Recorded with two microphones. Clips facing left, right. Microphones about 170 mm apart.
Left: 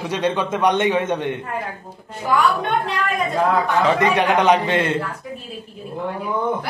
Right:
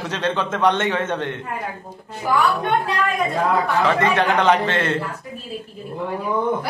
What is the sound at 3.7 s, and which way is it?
A man's voice, 15° left (ahead or behind).